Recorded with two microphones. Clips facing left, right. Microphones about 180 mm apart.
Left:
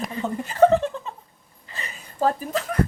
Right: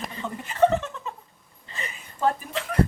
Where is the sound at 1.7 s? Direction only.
35° left (ahead or behind).